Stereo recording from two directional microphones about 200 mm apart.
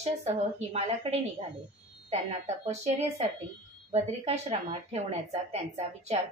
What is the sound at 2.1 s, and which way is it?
Speech, 35° right (ahead or behind).